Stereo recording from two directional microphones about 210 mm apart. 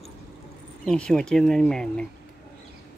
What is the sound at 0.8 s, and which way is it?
Speech, 5° left (ahead or behind).